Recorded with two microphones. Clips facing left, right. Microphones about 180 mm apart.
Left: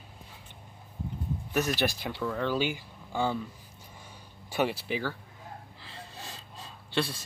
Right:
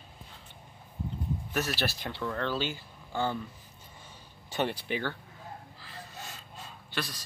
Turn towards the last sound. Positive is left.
turn(degrees=30)  # may be behind; listen again after turning